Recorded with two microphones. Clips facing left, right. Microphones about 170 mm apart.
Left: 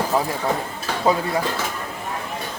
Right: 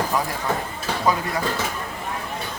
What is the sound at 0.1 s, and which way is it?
Speech, 25° left (ahead or behind).